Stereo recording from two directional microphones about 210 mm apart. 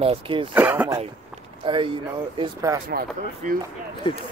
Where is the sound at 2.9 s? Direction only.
45° right (ahead or behind).